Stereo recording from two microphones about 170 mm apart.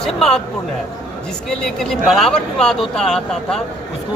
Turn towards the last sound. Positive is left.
turn(degrees=5)  # may be behind; listen again after turning